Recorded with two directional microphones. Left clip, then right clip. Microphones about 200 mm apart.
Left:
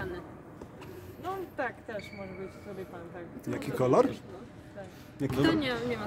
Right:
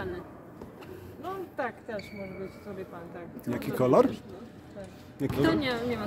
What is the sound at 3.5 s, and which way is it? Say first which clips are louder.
Speech: right 2 dB; 10° right (ahead or behind).